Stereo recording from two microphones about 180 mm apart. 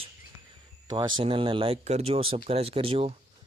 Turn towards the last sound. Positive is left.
turn(degrees=-30)  # may be behind; listen again after turning